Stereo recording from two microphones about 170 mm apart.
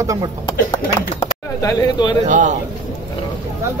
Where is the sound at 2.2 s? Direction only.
45° right (ahead or behind).